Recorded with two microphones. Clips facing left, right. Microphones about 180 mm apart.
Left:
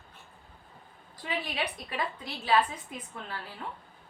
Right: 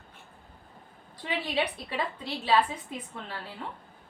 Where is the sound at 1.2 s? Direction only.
30° right (ahead or behind).